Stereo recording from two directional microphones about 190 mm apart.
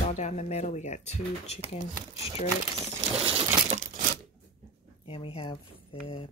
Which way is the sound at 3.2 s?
30° right (ahead or behind).